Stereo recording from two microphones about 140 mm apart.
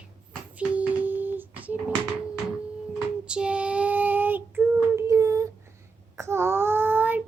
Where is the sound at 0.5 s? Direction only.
10° right (ahead or behind).